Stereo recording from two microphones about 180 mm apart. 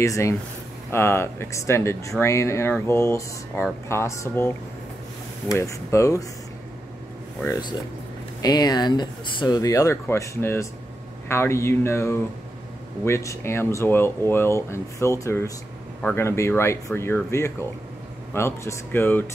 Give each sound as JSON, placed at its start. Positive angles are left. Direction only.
{"t": 0.0, "sound": "speech", "side_deg": 15}
{"t": 8.4, "sound": "speech", "side_deg": 20}